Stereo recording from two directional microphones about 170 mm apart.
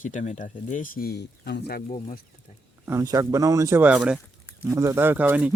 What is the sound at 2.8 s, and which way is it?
Speech, 15° right (ahead or behind).